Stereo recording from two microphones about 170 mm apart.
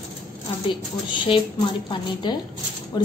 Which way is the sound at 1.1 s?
30° left (ahead or behind).